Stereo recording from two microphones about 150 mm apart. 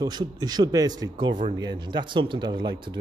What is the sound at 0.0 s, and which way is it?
Speech, 25° right (ahead or behind).